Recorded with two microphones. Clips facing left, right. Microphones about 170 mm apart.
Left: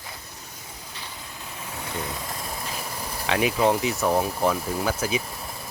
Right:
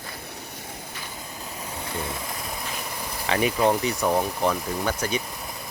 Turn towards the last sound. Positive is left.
turn(degrees=5)  # may be behind; listen again after turning